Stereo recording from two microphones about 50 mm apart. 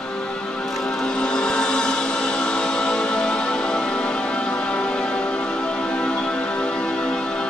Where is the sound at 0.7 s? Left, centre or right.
Centre.